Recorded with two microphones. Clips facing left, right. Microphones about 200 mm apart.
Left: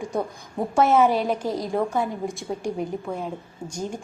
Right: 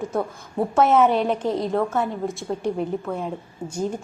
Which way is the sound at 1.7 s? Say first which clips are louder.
Right 1 dB; 10° left (ahead or behind).